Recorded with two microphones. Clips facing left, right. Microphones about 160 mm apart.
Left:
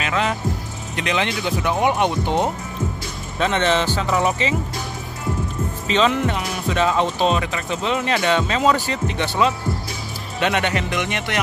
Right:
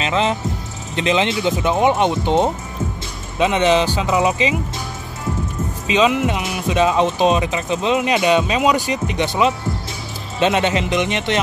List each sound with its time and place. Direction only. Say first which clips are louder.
0.0 s speech: right 3 dB; 25° right (ahead or behind)
5.9 s speech: right 3 dB; 10° right (ahead or behind)